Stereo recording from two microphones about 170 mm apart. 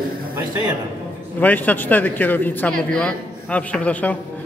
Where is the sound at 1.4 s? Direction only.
10° left (ahead or behind).